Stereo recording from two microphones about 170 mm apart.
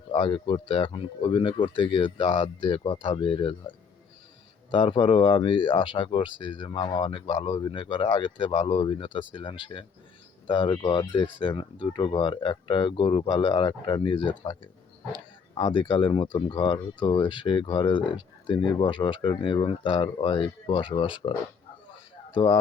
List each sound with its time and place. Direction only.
0.1 s speech: 30° left (ahead or behind)